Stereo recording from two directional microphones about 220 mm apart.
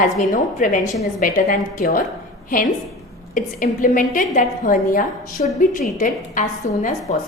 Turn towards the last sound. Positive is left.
turn(degrees=35)  # may be behind; listen again after turning